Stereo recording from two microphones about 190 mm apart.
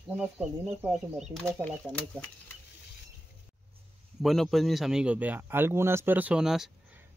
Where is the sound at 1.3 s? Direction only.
5° left (ahead or behind).